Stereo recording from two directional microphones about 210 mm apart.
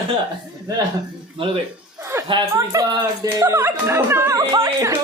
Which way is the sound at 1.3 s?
25° right (ahead or behind).